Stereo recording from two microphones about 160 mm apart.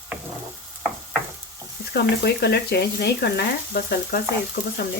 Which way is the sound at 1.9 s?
90° left.